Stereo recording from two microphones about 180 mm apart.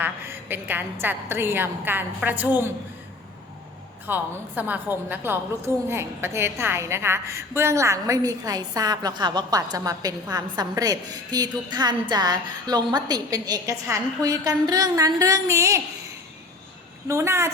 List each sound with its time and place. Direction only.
0.0 s a woman's voice: 10° right (ahead or behind)
4.0 s a woman's voice: 10° right (ahead or behind)
17.1 s a woman's voice: 15° right (ahead or behind)